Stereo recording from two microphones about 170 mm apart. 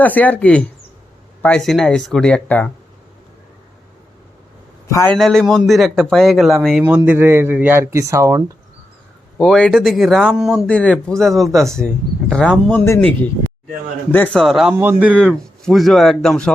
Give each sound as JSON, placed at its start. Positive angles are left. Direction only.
{"t": 0.0, "sound": "speech", "side_deg": 10}
{"t": 4.9, "sound": "speech", "side_deg": 20}
{"t": 5.1, "sound": "a man's voice", "side_deg": 0}
{"t": 9.4, "sound": "speech", "side_deg": 5}
{"t": 14.3, "sound": "speech", "side_deg": 0}
{"t": 14.7, "sound": "a man's voice", "side_deg": -10}